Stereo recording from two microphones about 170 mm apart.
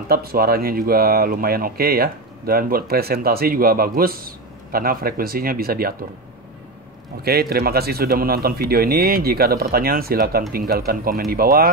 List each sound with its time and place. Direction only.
0.1 s speech: 60° right (ahead or behind)
7.2 s speech: 65° right (ahead or behind)